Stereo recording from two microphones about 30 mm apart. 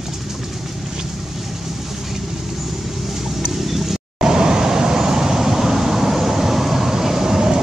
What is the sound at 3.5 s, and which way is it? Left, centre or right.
Vehicle, centre.